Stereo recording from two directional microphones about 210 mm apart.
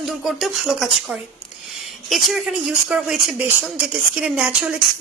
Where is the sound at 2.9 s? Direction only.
5° right (ahead or behind).